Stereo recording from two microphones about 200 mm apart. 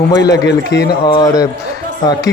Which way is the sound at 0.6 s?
60° left (ahead or behind).